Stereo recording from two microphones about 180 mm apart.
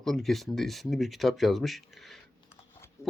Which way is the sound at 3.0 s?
15° left (ahead or behind).